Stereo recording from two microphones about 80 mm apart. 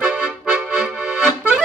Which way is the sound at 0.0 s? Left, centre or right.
Centre.